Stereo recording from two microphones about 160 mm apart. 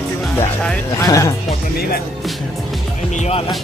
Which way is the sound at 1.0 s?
20° left (ahead or behind).